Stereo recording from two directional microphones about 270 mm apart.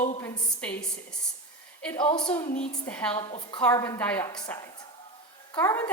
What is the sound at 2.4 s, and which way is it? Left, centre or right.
Speech, left.